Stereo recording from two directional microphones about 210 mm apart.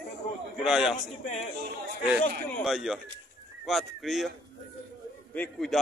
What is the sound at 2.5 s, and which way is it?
A man's voice, centre (ahead or behind).